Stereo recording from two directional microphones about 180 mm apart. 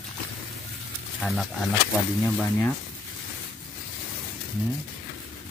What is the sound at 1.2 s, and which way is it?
Speech, centre (ahead or behind).